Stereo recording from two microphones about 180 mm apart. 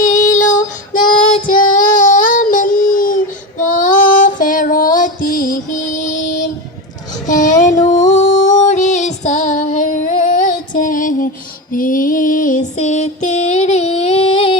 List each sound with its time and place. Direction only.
0.0 s female singing: 45° left (ahead or behind)
1.5 s child singing: 50° left (ahead or behind)
7.3 s music: 45° left (ahead or behind)
11.7 s female singing: 50° left (ahead or behind); by 14.6 s 30° left (ahead or behind)